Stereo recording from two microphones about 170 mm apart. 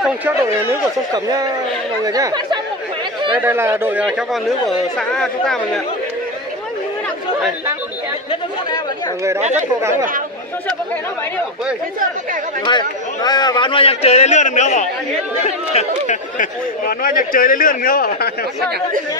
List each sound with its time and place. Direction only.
0.0 s speech: 10° right (ahead or behind)
1.1 s speech: 25° right (ahead or behind); by 5.6 s 5° left (ahead or behind)
8.3 s speech: 25° left (ahead or behind)
9.8 s speech: 15° right (ahead or behind)
12.6 s a man's voice: 25° left (ahead or behind)
16.1 s speech: 55° left (ahead or behind)